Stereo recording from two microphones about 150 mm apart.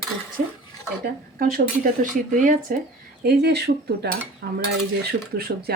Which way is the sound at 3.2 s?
90° right.